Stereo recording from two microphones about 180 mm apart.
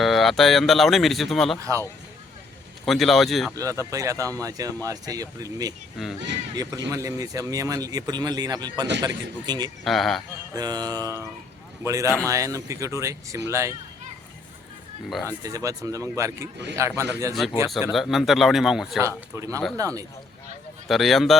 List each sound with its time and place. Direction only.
0.0 s speech: centre (ahead or behind)
2.8 s speech: centre (ahead or behind)
3.5 s speech: 20° right (ahead or behind)
6.0 s speech: centre (ahead or behind)
6.5 s speech: 20° right (ahead or behind)
9.8 s speech: centre (ahead or behind)
10.5 s speech: 20° right (ahead or behind)
15.3 s speech: 20° right (ahead or behind)
17.9 s speech: centre (ahead or behind)
19.0 s speech: 15° right (ahead or behind)
20.8 s speech: centre (ahead or behind)